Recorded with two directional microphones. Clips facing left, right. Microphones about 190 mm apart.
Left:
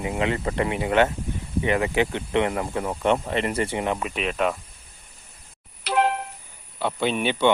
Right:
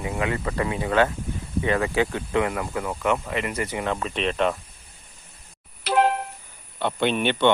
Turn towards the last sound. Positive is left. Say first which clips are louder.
# right 1 dB
turn(degrees=5)  # may be behind; listen again after turning